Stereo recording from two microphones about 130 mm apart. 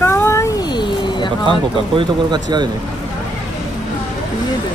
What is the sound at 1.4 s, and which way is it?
Speech, 40° right (ahead or behind).